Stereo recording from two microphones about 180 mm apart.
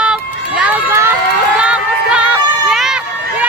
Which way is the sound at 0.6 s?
10° right (ahead or behind).